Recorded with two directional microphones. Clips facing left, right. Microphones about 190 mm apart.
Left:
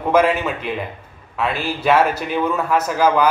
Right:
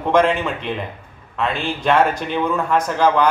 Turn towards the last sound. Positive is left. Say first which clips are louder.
# even
turn(degrees=5)  # may be behind; listen again after turning